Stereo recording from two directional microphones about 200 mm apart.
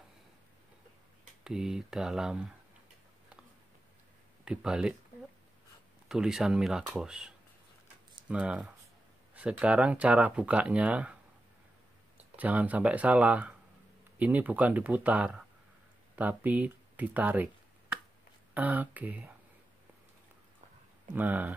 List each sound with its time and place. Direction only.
1.4 s speech: 5° right (ahead or behind)
4.5 s speech: 5° right (ahead or behind)
6.0 s speech: 5° right (ahead or behind)
12.4 s speech: 5° right (ahead or behind)
18.5 s speech: 10° right (ahead or behind)
21.1 s speech: 10° right (ahead or behind)